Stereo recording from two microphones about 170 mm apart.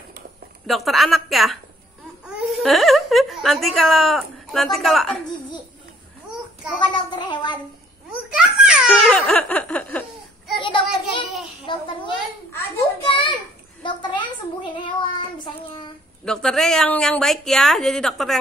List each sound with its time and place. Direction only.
0.7 s a woman's voice: centre (ahead or behind)
6.8 s child singing: 25° left (ahead or behind)
8.3 s a child's voice: 5° right (ahead or behind)
10.6 s child singing: 30° left (ahead or behind)
11.6 s a sound: 30° left (ahead or behind)
13.0 s a sound: 30° left (ahead or behind)
13.8 s child singing: 25° left (ahead or behind)
16.3 s a woman's voice: 5° left (ahead or behind)